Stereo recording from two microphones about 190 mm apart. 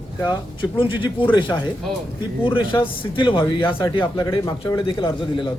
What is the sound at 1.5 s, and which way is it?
Speech, 10° left (ahead or behind).